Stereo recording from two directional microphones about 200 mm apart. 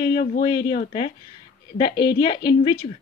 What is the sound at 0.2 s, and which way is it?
Speech, 40° left (ahead or behind).